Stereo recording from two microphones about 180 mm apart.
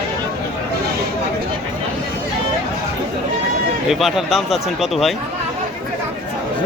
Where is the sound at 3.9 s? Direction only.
Centre (ahead or behind).